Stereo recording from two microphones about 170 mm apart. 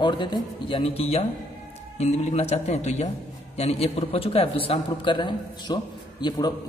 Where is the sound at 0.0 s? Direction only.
25° left (ahead or behind).